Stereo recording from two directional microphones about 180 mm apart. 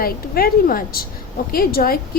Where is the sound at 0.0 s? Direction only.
55° left (ahead or behind).